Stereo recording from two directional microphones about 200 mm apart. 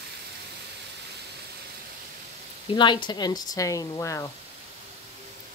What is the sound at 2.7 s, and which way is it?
Speech, 25° left (ahead or behind).